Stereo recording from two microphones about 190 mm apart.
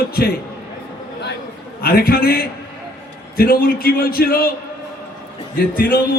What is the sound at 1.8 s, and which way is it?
A man's voice, 50° left (ahead or behind).